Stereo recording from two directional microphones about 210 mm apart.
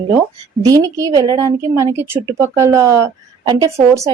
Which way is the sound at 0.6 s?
15° right (ahead or behind).